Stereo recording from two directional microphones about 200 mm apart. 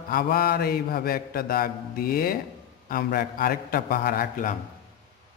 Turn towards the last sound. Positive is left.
turn(degrees=45)  # may be behind; listen again after turning